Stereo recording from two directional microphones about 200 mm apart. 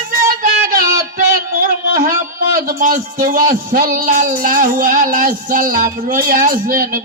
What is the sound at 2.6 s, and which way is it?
Speech, 45° right (ahead or behind).